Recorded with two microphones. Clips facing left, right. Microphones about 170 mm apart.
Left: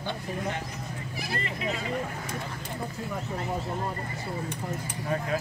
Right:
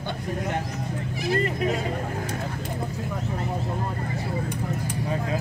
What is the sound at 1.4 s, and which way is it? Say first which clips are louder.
Speech: right 7 dB; 45° right (ahead or behind).